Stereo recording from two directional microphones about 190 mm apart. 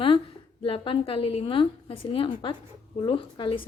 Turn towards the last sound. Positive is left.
turn(degrees=25)  # may be behind; listen again after turning